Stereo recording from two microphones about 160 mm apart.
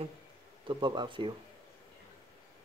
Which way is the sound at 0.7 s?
30° right (ahead or behind).